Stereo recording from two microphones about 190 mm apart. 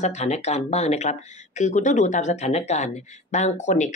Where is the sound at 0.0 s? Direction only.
35° left (ahead or behind).